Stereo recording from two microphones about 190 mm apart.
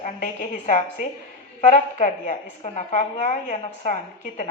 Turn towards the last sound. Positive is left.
turn(degrees=40)  # may be behind; listen again after turning